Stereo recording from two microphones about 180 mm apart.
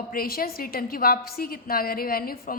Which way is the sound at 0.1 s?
55° left (ahead or behind).